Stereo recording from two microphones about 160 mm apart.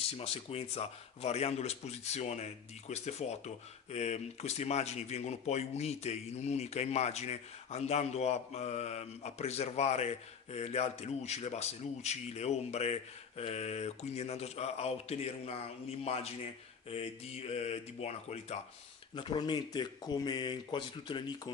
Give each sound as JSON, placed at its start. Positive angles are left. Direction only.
{"t": 0.0, "sound": "speech", "side_deg": 35}
{"t": 19.1, "sound": "speech", "side_deg": 30}